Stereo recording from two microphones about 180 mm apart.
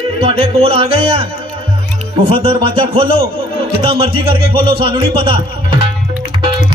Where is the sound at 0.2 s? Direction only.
30° right (ahead or behind).